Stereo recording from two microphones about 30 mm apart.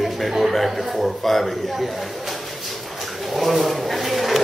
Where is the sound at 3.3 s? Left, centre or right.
Centre.